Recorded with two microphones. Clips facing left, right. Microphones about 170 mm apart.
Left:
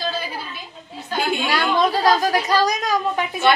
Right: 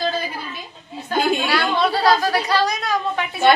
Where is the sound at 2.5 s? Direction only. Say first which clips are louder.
Left 2 dB; 40° left (ahead or behind).